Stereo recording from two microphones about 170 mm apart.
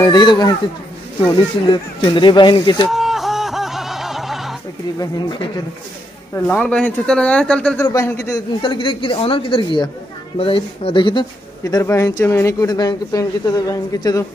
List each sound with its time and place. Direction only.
0.0 s speech: 25° left (ahead or behind)
2.9 s music: centre (ahead or behind)
4.9 s speech: 25° left (ahead or behind)
6.3 s speech: 10° left (ahead or behind)
8.6 s speech: 30° left (ahead or behind)